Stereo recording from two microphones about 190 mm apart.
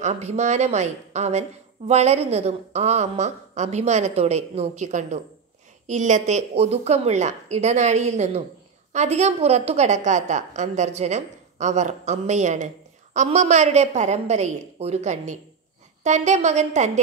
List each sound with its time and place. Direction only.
0.0 s a woman's voice: 35° right (ahead or behind)